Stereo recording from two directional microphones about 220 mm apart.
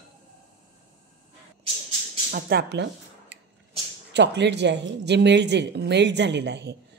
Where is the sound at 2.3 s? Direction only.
45° right (ahead or behind).